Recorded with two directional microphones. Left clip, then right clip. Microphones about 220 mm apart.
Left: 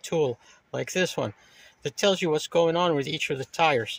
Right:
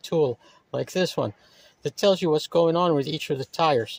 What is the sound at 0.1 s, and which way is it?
Speech, 20° right (ahead or behind).